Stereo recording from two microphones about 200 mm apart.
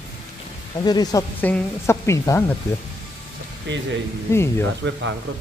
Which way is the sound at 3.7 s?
65° right (ahead or behind).